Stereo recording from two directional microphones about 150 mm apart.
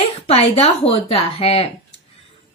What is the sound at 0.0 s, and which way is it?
A woman's voice, 40° left (ahead or behind).